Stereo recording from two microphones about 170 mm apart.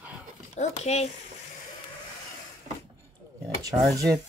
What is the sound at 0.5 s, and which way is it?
Speech, 40° left (ahead or behind).